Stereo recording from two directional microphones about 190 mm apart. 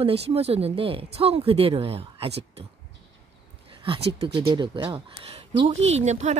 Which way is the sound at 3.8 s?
30° right (ahead or behind).